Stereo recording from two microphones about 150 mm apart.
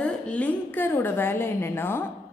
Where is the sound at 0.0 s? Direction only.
10° left (ahead or behind).